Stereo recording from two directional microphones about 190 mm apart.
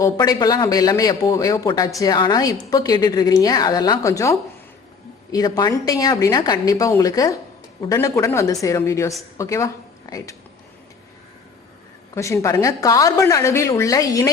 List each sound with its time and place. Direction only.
0.0 s a man's voice: 20° left (ahead or behind)
12.1 s a woman's voice: 15° left (ahead or behind)